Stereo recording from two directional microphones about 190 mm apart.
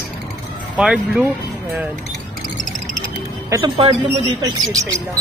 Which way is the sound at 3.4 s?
20° right (ahead or behind).